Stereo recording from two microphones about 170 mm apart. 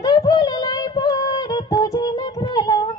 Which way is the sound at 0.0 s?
25° left (ahead or behind).